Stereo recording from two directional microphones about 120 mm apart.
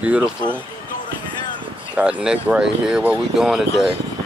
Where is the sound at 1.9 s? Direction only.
10° right (ahead or behind).